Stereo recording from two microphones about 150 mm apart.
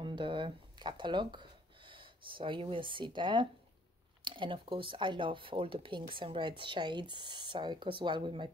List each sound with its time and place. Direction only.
0.0 s speech: 35° right (ahead or behind)